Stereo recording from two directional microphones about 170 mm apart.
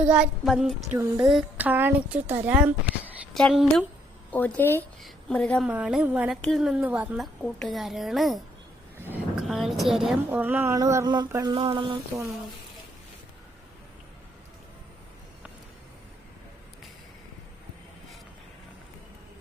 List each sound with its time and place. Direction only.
0.0 s a woman's voice: 5° right (ahead or behind)
0.9 s a woman's voice: 15° right (ahead or behind)
1.3 s a woman's voice: 5° right (ahead or behind)
5.6 s a woman's voice: 5° right (ahead or behind)
9.0 s vehicle: 10° right (ahead or behind)
9.4 s a woman's voice: centre (ahead or behind); by 11.9 s 30° right (ahead or behind)